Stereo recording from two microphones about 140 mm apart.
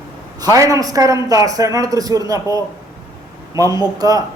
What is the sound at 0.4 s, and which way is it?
A man's voice, 25° right (ahead or behind).